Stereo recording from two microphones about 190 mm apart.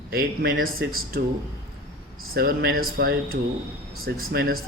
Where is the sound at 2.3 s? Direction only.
50° right (ahead or behind).